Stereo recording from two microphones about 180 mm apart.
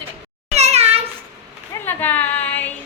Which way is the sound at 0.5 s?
35° right (ahead or behind).